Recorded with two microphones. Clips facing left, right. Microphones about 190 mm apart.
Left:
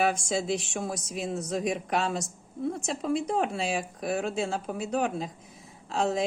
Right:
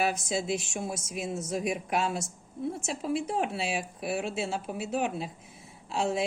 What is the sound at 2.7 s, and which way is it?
A woman's voice, 5° right (ahead or behind).